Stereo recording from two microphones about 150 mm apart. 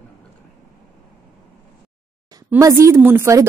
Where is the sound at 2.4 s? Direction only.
20° right (ahead or behind).